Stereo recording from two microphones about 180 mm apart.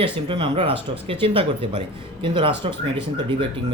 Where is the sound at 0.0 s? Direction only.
30° right (ahead or behind).